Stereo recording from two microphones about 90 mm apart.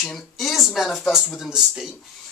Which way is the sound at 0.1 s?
Centre (ahead or behind).